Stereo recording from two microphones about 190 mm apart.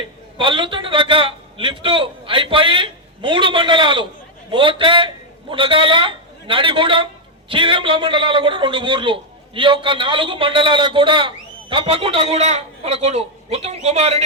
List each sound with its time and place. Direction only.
0.3 s a man's voice: 25° right (ahead or behind)